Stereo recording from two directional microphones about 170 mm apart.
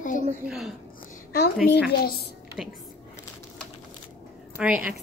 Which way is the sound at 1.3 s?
75° left (ahead or behind).